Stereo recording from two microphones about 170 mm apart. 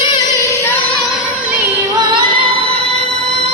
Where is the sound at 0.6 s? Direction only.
15° left (ahead or behind).